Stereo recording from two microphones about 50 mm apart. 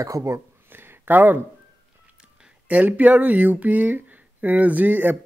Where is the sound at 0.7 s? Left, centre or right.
Right.